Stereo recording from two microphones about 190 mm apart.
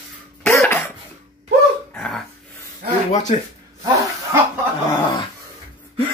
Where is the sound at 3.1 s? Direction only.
35° left (ahead or behind).